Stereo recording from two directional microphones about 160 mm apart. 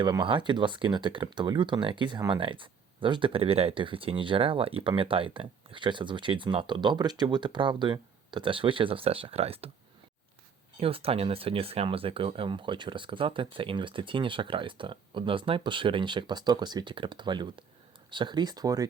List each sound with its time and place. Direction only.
0.0 s speech: 30° right (ahead or behind)
10.8 s speech: 35° right (ahead or behind)